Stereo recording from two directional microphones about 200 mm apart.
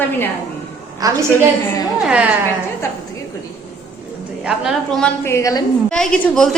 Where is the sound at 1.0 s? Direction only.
15° right (ahead or behind).